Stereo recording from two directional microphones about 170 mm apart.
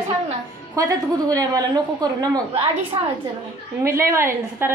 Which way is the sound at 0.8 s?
20° right (ahead or behind).